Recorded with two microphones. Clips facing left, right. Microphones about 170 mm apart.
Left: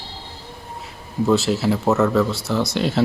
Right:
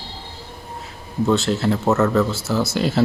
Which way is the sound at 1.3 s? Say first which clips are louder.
Left 1 dB; centre (ahead or behind).